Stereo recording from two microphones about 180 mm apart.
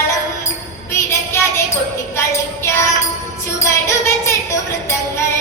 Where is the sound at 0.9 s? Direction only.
15° left (ahead or behind).